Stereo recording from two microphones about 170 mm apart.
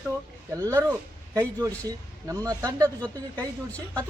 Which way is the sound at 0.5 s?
20° right (ahead or behind).